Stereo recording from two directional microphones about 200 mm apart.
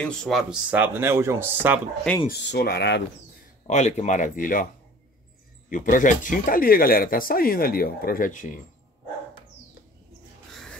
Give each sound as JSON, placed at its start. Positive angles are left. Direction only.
{"t": 0.0, "sound": "speech", "side_deg": 5}
{"t": 2.2, "sound": "speech", "side_deg": 55}
{"t": 3.6, "sound": "speech", "side_deg": 35}
{"t": 5.7, "sound": "speech", "side_deg": 40}
{"t": 10.5, "sound": "a sound", "side_deg": 5}